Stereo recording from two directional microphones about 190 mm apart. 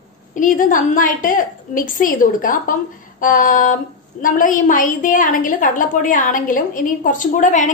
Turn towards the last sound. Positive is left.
turn(degrees=40)  # may be behind; listen again after turning